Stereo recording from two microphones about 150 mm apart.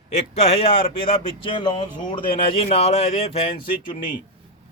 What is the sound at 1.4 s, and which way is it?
Speech, 30° left (ahead or behind).